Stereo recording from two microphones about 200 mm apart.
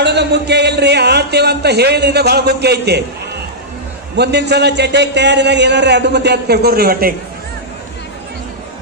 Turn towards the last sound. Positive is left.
turn(degrees=-50)  # may be behind; listen again after turning